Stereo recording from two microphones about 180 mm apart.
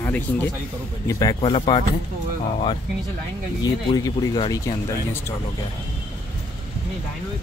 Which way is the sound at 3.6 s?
25° left (ahead or behind).